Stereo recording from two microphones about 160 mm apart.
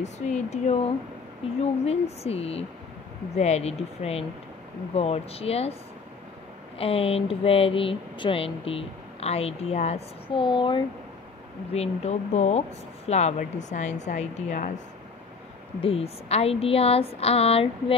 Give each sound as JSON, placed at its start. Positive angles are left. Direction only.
{"t": 0.5, "sound": "speech", "side_deg": 45}
{"t": 6.8, "sound": "speech", "side_deg": 35}
{"t": 11.7, "sound": "speech", "side_deg": 40}
{"t": 15.8, "sound": "speech", "side_deg": 40}